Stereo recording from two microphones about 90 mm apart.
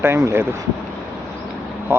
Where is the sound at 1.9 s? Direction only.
25° right (ahead or behind).